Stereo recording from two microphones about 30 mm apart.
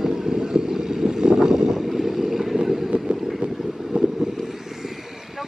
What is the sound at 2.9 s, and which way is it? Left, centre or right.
Vehicle, right.